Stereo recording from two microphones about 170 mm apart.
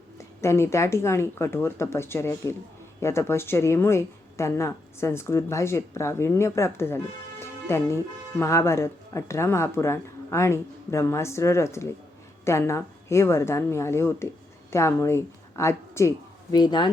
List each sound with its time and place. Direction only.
0.2 s a woman's voice: 15° left (ahead or behind)